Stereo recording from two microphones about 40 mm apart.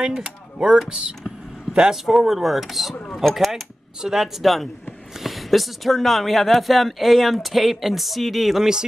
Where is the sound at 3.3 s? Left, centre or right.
Centre.